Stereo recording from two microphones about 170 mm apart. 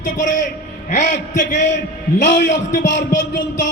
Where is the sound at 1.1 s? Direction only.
50° left (ahead or behind).